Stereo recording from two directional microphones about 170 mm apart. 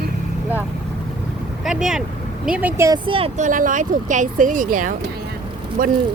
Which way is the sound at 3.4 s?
50° right (ahead or behind).